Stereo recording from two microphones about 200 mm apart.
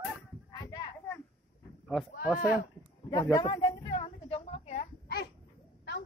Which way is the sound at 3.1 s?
15° left (ahead or behind).